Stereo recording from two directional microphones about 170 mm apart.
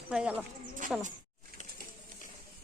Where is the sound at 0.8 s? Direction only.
50° right (ahead or behind).